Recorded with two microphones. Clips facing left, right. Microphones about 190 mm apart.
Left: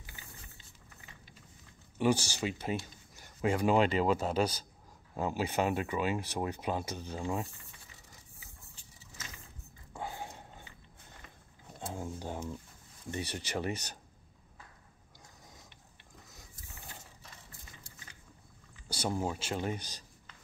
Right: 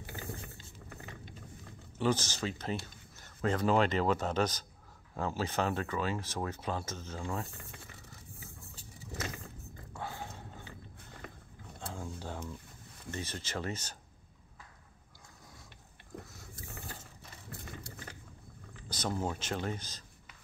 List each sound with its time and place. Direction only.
0.1 s vehicle: 60° right (ahead or behind)
2.0 s speech: 15° left (ahead or behind)
9.9 s dog: 15° left (ahead or behind)
11.9 s a sound: 15° left (ahead or behind)
13.1 s speech: 15° left (ahead or behind)
17.5 s vehicle: 65° right (ahead or behind)
18.9 s speech: 10° left (ahead or behind)